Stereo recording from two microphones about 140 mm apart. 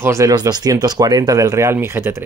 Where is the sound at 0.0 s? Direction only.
20° right (ahead or behind).